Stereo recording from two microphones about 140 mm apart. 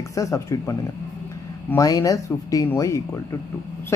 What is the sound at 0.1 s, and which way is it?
Speech, 20° left (ahead or behind).